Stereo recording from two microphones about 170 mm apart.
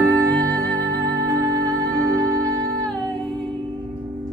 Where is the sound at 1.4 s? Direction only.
20° right (ahead or behind).